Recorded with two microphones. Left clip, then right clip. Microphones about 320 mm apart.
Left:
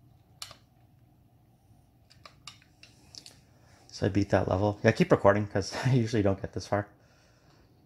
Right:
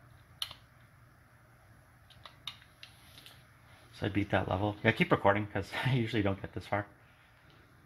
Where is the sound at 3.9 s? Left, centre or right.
Left.